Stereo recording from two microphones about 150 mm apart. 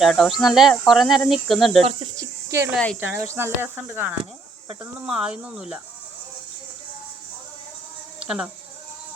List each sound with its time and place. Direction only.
0.0 s speech: centre (ahead or behind)
2.1 s cricket: 20° right (ahead or behind)
2.7 s speech: centre (ahead or behind)
3.0 s speech: 15° right (ahead or behind)
8.2 s speech: 5° right (ahead or behind)